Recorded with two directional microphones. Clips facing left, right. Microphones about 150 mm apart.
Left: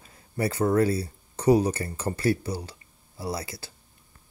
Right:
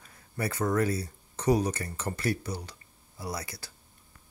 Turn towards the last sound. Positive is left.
turn(degrees=25)  # may be behind; listen again after turning